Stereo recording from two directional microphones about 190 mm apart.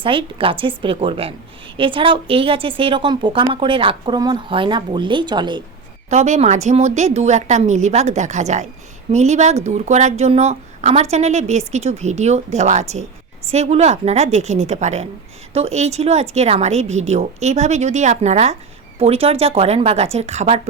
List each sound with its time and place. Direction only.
0.0 s a woman's voice: 25° right (ahead or behind)
6.1 s a woman's voice: 35° right (ahead or behind)